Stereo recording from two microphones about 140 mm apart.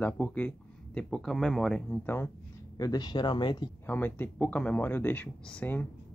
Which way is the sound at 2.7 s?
25° left (ahead or behind).